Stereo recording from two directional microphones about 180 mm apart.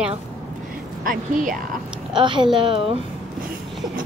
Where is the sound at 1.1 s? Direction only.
45° right (ahead or behind).